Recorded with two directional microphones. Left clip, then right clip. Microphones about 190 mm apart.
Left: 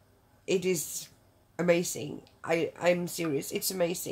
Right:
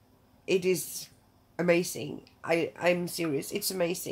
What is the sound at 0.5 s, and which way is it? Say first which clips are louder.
Speech: right 2 dB; centre (ahead or behind).